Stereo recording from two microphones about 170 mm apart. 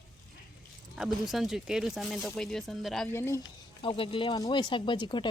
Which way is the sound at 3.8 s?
30° left (ahead or behind).